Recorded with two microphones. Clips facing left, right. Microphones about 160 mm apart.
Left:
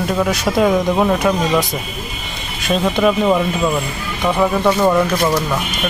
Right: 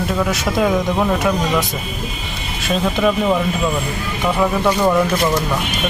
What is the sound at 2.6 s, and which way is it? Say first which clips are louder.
Speech: left 2 dB; centre (ahead or behind).